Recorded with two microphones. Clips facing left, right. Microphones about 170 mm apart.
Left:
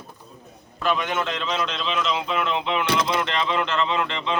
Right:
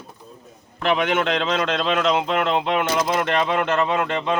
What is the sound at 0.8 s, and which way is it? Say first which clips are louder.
A man's voice: right 4 dB; 65° right (ahead or behind).